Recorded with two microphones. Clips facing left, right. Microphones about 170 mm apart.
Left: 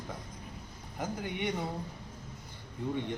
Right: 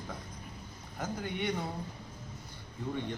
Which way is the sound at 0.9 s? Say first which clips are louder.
Even; 15° left (ahead or behind).